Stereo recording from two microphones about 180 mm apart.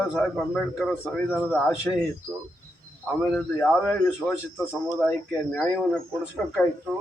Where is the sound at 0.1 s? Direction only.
Centre (ahead or behind).